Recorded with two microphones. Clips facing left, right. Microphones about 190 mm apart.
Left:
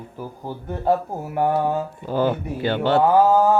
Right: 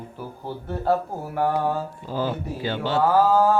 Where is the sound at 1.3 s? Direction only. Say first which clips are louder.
Left 3 dB; 20° left (ahead or behind).